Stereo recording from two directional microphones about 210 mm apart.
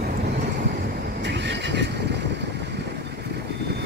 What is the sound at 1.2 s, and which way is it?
Vehicle, 55° right (ahead or behind).